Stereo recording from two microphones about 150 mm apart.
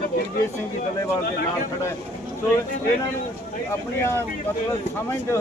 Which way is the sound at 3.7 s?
15° left (ahead or behind).